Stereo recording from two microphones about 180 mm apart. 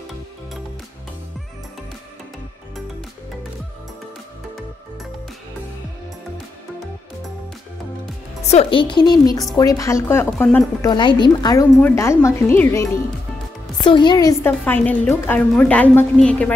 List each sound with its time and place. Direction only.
8.4 s a woman's voice: 35° left (ahead or behind); by 10.9 s 10° left (ahead or behind)
10.9 s a woman's voice: 25° left (ahead or behind)
13.8 s a woman's voice: 25° left (ahead or behind)
14.6 s a woman's voice: 10° left (ahead or behind)